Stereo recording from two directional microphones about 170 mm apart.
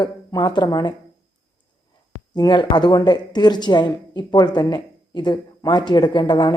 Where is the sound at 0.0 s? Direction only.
25° left (ahead or behind).